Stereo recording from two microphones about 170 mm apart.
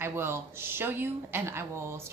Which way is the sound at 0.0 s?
15° right (ahead or behind).